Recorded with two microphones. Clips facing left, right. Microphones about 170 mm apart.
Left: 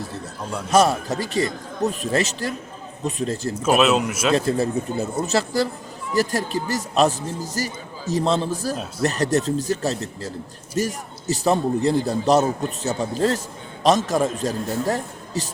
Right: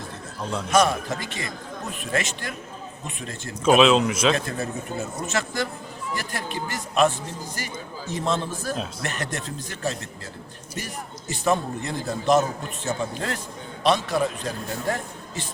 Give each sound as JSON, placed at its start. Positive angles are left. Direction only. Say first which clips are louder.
{"t": 0.7, "sound": "a man's voice", "louder": "left 3 dB", "side_deg": 40}
{"t": 3.6, "sound": "speech", "louder": "right 2 dB", "side_deg": 5}
{"t": 4.4, "sound": "a man's voice", "louder": "left 8 dB", "side_deg": 30}